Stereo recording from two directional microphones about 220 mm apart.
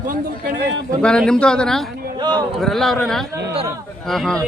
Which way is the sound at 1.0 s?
5° left (ahead or behind).